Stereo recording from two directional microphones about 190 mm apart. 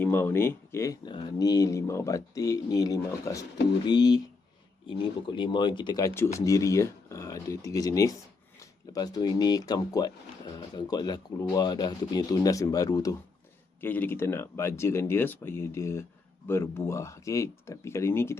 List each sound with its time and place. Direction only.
0.0 s speech: 10° left (ahead or behind)